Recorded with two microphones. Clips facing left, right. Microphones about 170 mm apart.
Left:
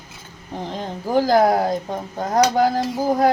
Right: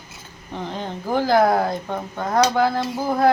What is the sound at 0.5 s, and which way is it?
Speech, 35° left (ahead or behind).